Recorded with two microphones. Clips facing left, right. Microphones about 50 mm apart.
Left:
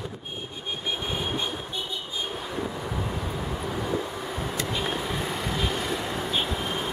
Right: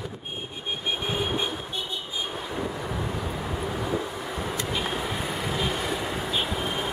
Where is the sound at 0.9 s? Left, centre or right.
Centre.